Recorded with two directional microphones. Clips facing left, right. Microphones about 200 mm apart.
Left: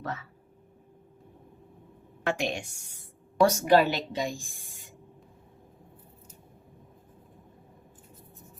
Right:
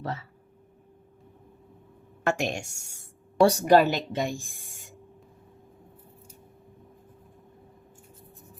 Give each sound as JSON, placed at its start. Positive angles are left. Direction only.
{"t": 0.0, "sound": "speech", "side_deg": -30}
{"t": 2.2, "sound": "a woman's voice", "side_deg": -45}
{"t": 3.4, "sound": "a woman's voice", "side_deg": -35}
{"t": 3.8, "sound": "a woman's voice", "side_deg": -45}